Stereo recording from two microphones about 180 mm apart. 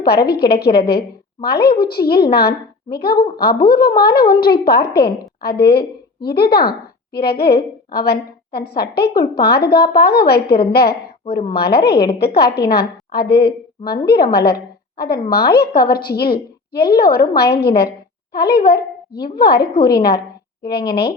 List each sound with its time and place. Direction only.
0.3 s a woman's voice: 60° left (ahead or behind)